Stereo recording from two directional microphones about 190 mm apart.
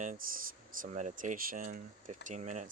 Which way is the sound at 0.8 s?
40° right (ahead or behind).